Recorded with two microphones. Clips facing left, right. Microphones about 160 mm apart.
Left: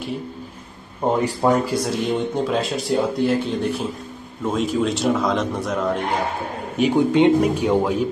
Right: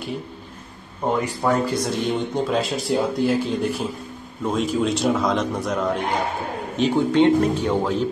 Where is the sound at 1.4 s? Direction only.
25° left (ahead or behind).